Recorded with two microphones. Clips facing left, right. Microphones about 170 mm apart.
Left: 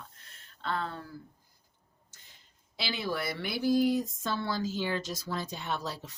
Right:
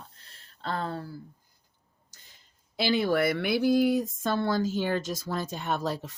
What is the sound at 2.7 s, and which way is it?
Speech, 55° right (ahead or behind).